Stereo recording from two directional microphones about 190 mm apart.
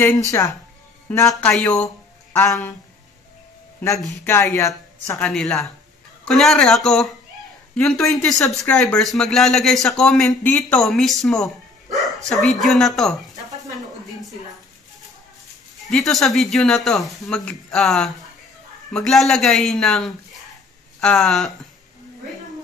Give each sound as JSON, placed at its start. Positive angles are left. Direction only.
{"t": 0.0, "sound": "a man's voice", "side_deg": 15}
{"t": 1.3, "sound": "speech", "side_deg": 5}
{"t": 2.3, "sound": "speech", "side_deg": 15}
{"t": 4.1, "sound": "speech", "side_deg": 15}
{"t": 5.2, "sound": "speech", "side_deg": 5}
{"t": 15.9, "sound": "speech", "side_deg": 0}